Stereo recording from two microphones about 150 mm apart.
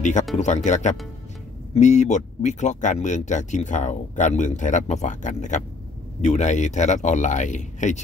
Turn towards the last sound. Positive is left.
turn(degrees=55)  # may be behind; listen again after turning